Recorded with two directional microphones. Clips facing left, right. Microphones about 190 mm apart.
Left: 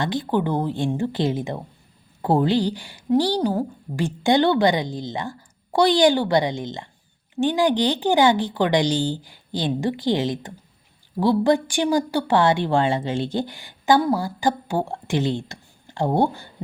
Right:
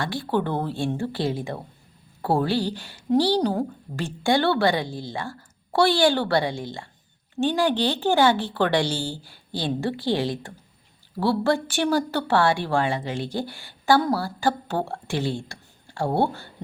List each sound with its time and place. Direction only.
0.0 s a woman's voice: 20° left (ahead or behind)